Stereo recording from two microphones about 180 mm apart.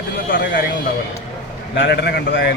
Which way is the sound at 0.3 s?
50° left (ahead or behind).